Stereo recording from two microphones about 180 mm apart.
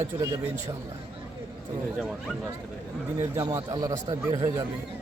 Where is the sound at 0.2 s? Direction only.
20° right (ahead or behind).